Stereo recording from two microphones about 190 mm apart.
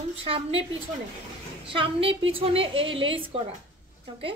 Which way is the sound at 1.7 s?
25° right (ahead or behind).